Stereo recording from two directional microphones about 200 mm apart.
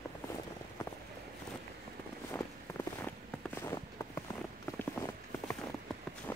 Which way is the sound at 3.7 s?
15° left (ahead or behind).